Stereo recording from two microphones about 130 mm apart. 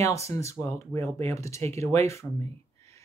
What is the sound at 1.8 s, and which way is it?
Speech, 55° right (ahead or behind).